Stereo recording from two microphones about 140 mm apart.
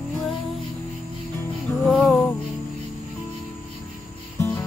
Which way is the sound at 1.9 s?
Centre (ahead or behind).